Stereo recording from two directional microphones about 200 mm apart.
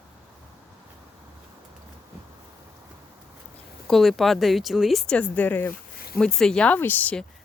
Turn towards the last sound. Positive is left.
turn(degrees=10)  # may be behind; listen again after turning